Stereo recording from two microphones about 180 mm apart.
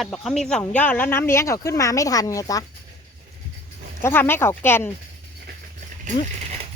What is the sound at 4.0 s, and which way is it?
Speech, 15° left (ahead or behind).